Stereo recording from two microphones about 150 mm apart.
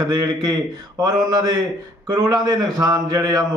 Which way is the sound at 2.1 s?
25° right (ahead or behind).